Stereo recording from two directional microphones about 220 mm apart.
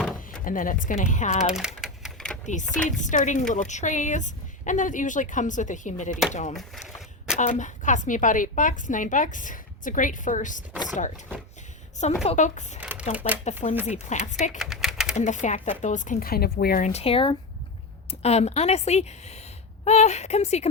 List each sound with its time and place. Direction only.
0.4 s a woman's voice: 40° left (ahead or behind)
1.5 s speech: centre (ahead or behind)
2.5 s a woman's voice: 35° left (ahead or behind)
6.5 s speech: centre (ahead or behind)
7.3 s a woman's voice: 35° left (ahead or behind)
12.2 s a woman's voice: 30° left (ahead or behind)
12.8 s shuffling cards: 5° right (ahead or behind)
13.1 s speech: 10° right (ahead or behind)
13.4 s a woman's voice: 35° left (ahead or behind)
14.6 s typing: centre (ahead or behind)
15.1 s a woman's voice: 35° left (ahead or behind)